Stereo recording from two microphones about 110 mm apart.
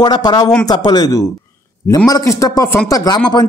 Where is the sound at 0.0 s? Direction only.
40° left (ahead or behind).